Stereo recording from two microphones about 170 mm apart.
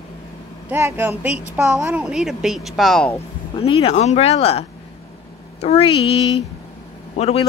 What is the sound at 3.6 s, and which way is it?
A man's voice, 35° left (ahead or behind).